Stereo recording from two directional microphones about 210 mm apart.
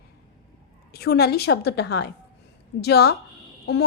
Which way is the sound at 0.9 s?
50° left (ahead or behind).